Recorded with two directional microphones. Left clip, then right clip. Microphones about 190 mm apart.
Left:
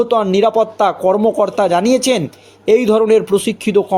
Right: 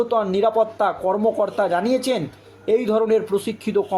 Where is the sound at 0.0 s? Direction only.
45° left (ahead or behind).